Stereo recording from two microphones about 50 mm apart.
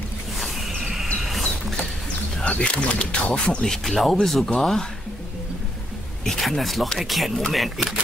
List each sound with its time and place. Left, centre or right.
0.4 s a sound: centre
2.4 s speech: left
3.6 s speech: centre
6.2 s speech: centre